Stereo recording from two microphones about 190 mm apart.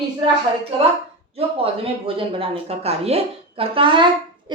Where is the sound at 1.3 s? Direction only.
30° right (ahead or behind).